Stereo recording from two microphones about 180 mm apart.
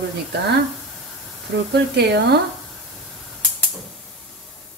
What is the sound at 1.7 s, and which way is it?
Speech, 70° right (ahead or behind).